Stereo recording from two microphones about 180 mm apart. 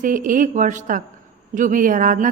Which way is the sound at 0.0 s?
50° right (ahead or behind).